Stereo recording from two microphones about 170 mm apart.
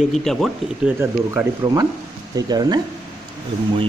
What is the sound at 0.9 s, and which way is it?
Speech, 20° right (ahead or behind).